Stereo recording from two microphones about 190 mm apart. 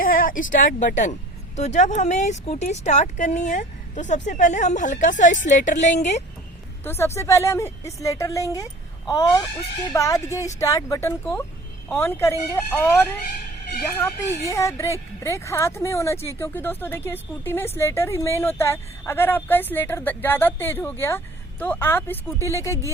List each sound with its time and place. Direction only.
0.0 s a sound: 45° left (ahead or behind)
0.5 s speech: 45° left (ahead or behind)
6.8 s speech: 15° left (ahead or behind)
9.0 s a sound: 20° left (ahead or behind)
9.9 s speech: 15° left (ahead or behind)
14.4 s speech: 15° left (ahead or behind)